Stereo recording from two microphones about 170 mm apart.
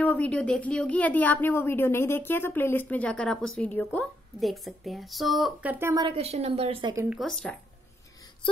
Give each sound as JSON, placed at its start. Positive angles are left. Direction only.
{"t": 0.0, "sound": "speech", "side_deg": 10}
{"t": 5.9, "sound": "a woman's voice", "side_deg": -35}
{"t": 7.2, "sound": "speech", "side_deg": 5}